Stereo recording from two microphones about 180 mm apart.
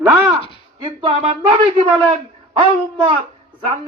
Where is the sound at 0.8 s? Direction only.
30° right (ahead or behind).